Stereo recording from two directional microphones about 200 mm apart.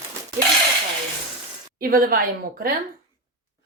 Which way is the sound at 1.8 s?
45° right (ahead or behind).